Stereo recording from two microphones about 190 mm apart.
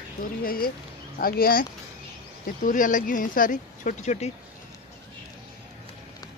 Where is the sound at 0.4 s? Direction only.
50° left (ahead or behind).